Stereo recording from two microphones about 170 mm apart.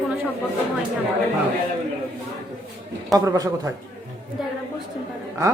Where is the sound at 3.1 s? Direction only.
20° right (ahead or behind).